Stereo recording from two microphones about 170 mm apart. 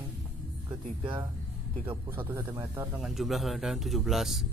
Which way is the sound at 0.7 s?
30° right (ahead or behind).